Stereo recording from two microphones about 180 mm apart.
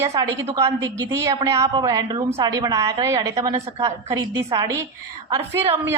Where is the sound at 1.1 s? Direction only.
15° right (ahead or behind).